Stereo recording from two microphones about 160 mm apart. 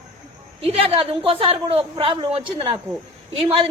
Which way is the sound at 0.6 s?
35° right (ahead or behind).